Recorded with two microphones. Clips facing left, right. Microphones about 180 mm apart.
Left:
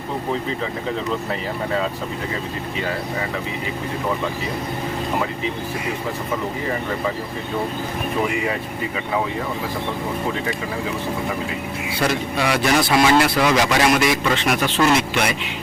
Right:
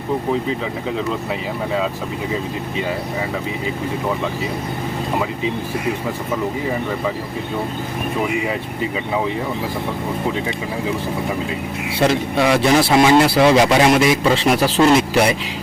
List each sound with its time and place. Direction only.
11.9 s a man's voice: 25° right (ahead or behind)